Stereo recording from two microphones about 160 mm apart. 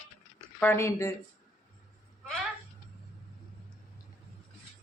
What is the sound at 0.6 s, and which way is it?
Speech, 15° left (ahead or behind).